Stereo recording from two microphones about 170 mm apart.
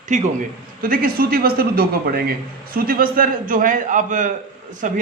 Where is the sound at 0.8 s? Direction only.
60° right (ahead or behind).